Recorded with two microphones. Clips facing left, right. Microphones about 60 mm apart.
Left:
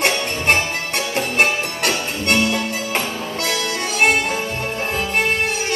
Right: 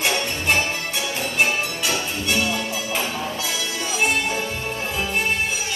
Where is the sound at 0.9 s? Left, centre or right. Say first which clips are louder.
Left 5 dB; left.